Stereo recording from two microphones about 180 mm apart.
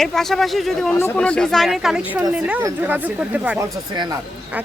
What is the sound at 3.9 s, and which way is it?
Speech, 25° right (ahead or behind).